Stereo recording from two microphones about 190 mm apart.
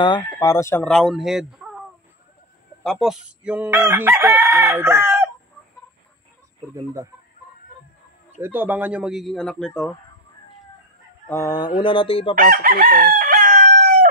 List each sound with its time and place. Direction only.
0.0 s speech: 20° left (ahead or behind); by 1.9 s 5° right (ahead or behind)
2.8 s chicken: centre (ahead or behind)
6.7 s chicken: 15° right (ahead or behind)
8.4 s a man's voice: 10° right (ahead or behind)
11.2 s fowl: 15° left (ahead or behind)
11.8 s speech: 25° left (ahead or behind)
12.4 s chicken: 50° right (ahead or behind)